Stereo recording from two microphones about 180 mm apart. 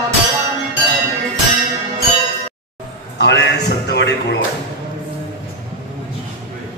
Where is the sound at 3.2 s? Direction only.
70° left (ahead or behind).